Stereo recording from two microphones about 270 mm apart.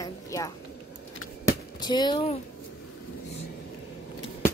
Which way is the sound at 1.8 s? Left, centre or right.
Centre.